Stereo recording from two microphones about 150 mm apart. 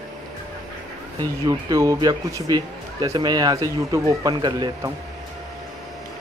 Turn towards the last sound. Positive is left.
turn(degrees=-25)  # may be behind; listen again after turning